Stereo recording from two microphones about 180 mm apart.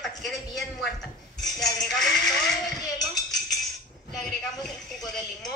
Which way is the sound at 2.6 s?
20° left (ahead or behind).